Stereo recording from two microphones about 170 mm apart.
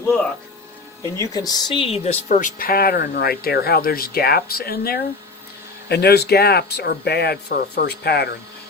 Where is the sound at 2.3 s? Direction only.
50° left (ahead or behind).